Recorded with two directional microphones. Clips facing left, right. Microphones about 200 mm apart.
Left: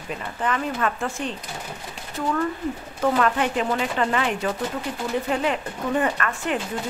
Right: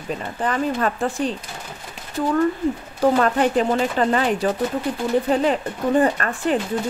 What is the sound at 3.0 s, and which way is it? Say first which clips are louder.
Speech: right 4 dB; 35° right (ahead or behind).